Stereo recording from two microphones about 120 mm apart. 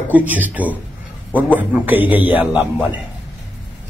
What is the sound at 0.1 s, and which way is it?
Speech, 15° right (ahead or behind).